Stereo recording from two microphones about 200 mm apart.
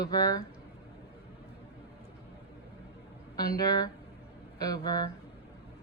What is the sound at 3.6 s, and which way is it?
A woman's voice, 20° left (ahead or behind).